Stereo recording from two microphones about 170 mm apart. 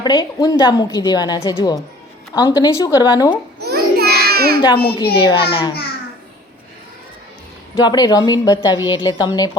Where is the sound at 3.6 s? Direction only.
70° right (ahead or behind).